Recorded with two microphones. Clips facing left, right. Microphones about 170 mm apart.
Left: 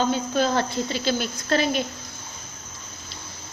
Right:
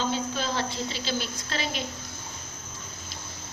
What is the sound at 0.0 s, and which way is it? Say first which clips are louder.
A woman's voice: left 7 dB; 50° left (ahead or behind).